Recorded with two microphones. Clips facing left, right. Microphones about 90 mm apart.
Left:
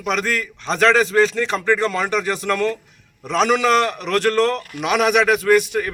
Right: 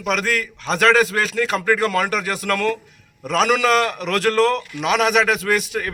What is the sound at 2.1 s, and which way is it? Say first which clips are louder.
Speech: left 2 dB; 30° left (ahead or behind).